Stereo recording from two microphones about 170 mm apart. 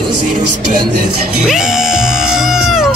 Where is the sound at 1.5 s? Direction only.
5° right (ahead or behind).